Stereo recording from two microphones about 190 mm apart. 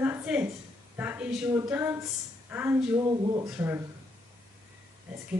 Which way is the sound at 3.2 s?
20° right (ahead or behind).